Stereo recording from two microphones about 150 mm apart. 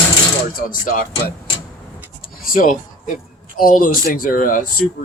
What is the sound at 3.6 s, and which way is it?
Speech, 65° left (ahead or behind).